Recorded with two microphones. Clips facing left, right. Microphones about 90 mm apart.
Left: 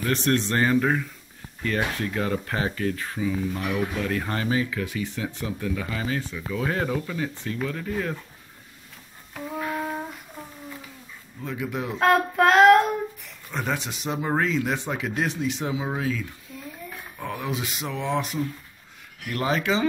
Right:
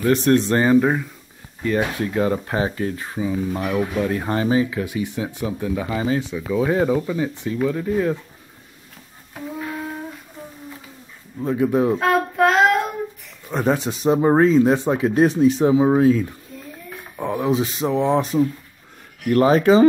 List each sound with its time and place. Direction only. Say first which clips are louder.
0.0 s speech: right 7 dB; 10° right (ahead or behind)
11.4 s speech: right 12 dB; 35° right (ahead or behind)
12.0 s child singing: right 2 dB; centre (ahead or behind)
13.5 s speech: right 8 dB; 35° right (ahead or behind)
17.2 s speech: right 10 dB; 25° right (ahead or behind); by 19.9 s 40° right (ahead or behind)